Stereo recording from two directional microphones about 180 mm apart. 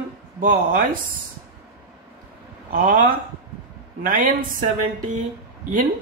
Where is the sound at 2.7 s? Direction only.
50° right (ahead or behind).